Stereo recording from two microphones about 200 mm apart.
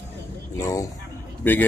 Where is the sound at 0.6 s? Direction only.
15° left (ahead or behind).